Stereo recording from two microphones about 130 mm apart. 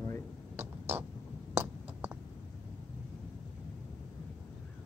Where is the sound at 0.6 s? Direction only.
15° right (ahead or behind).